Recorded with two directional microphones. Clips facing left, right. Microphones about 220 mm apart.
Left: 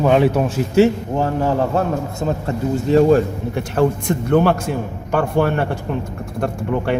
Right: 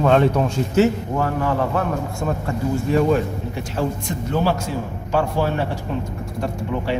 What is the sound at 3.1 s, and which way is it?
A man's voice, 60° left (ahead or behind).